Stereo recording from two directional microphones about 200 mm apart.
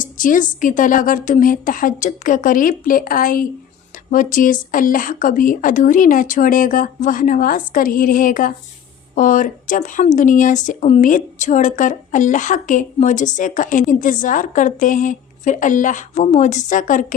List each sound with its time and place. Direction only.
0.0 s a woman's voice: 40° left (ahead or behind)